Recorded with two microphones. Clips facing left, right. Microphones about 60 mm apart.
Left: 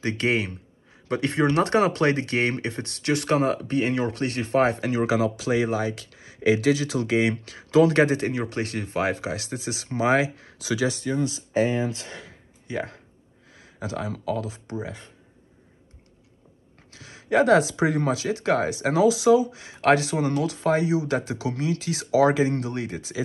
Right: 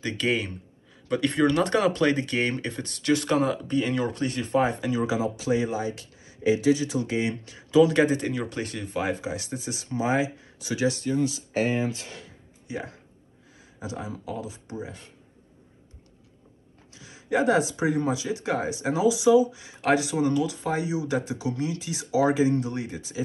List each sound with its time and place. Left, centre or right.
0.0 s speech: left
12.6 s speech: left
13.6 s speech: left
16.9 s speech: left